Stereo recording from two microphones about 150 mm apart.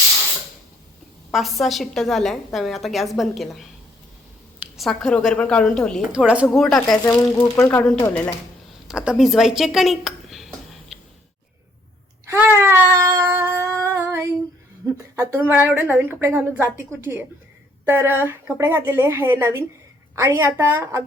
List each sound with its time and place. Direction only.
1.3 s a woman's voice: centre (ahead or behind)
4.8 s a woman's voice: 5° left (ahead or behind)
6.1 s speech: 5° right (ahead or behind)
7.3 s speech: 15° left (ahead or behind)
8.9 s a sound: 5° right (ahead or behind)
12.3 s a sound: 15° right (ahead or behind)
15.4 s speech: 15° right (ahead or behind)
17.8 s speech: 15° right (ahead or behind)